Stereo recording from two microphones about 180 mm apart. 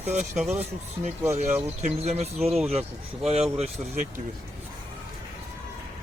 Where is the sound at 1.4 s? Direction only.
40° right (ahead or behind).